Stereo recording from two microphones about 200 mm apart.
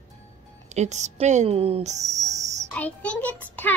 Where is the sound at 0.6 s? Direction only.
35° right (ahead or behind).